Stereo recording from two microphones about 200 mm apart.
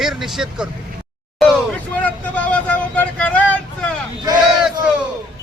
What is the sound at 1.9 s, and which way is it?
Vehicle, 5° left (ahead or behind).